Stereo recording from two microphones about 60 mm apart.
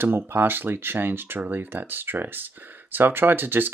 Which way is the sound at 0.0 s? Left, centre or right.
Right.